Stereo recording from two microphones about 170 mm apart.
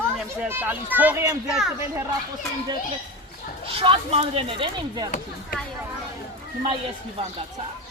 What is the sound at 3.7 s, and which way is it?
Speech, 35° right (ahead or behind).